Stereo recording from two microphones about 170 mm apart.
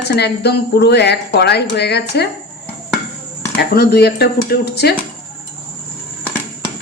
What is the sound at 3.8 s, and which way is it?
Speech, 70° left (ahead or behind).